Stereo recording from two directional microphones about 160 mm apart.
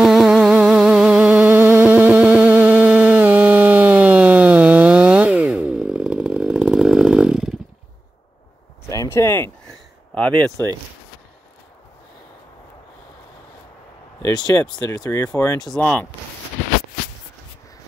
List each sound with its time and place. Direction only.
0.0 s music: 5° right (ahead or behind)
8.8 s a sound: 20° left (ahead or behind)
14.2 s speech: 25° left (ahead or behind)
15.7 s speech: 5° left (ahead or behind)